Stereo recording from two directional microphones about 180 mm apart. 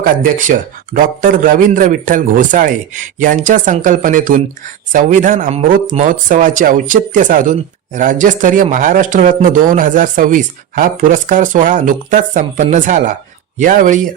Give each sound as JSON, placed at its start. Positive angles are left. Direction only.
{"t": 0.0, "sound": "speech", "side_deg": -45}